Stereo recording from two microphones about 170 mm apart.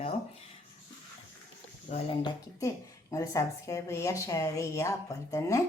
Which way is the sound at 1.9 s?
45° left (ahead or behind).